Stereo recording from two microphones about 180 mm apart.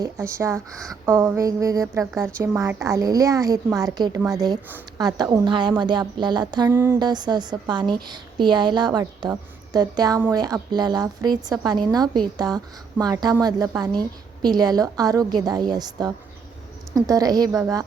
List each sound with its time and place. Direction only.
0.0 s a woman's voice: 15° right (ahead or behind)
6.7 s a woman's voice: 10° right (ahead or behind)
7.0 s a woman's voice: 25° right (ahead or behind)